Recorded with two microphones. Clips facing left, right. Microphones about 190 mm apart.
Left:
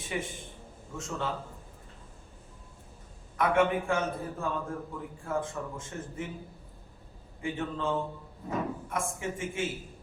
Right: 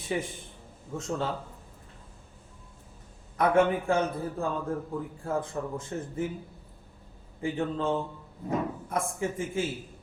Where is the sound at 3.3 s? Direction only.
35° right (ahead or behind).